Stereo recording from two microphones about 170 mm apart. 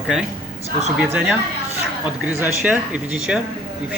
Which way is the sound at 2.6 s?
10° right (ahead or behind).